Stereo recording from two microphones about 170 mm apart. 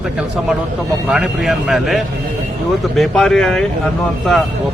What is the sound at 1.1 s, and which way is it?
A man's voice, 5° right (ahead or behind).